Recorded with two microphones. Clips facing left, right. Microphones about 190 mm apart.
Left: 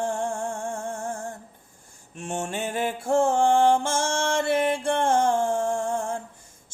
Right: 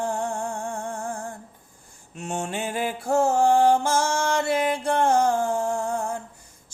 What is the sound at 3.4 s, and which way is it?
Mantra, 50° left (ahead or behind).